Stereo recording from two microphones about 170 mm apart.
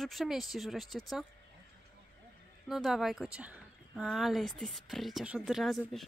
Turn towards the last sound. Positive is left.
turn(degrees=0)  # may be behind; listen again after turning